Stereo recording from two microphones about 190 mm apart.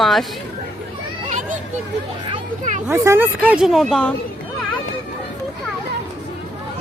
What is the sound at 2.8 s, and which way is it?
Speech, 15° right (ahead or behind).